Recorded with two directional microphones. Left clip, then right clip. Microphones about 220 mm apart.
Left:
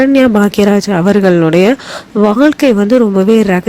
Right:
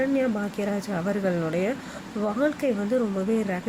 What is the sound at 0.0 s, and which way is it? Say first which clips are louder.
Speech: left 16 dB; 45° left (ahead or behind).